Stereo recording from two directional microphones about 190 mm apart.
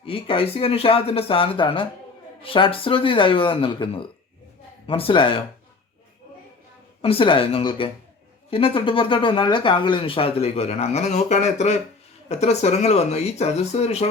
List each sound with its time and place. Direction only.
0.0 s speech: 30° left (ahead or behind)
7.0 s speech: 30° left (ahead or behind)